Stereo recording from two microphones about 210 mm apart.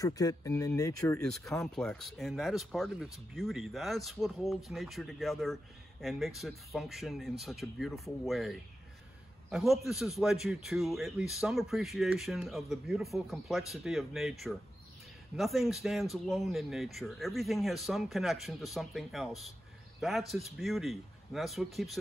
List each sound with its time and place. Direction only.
0.0 s speech: 15° left (ahead or behind)
1.2 s speech: centre (ahead or behind)